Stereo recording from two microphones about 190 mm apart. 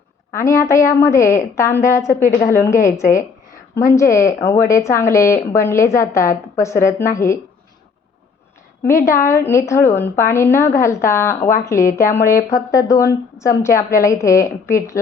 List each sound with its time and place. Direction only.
0.3 s a woman's voice: 15° left (ahead or behind)
9.0 s a woman's voice: 15° left (ahead or behind)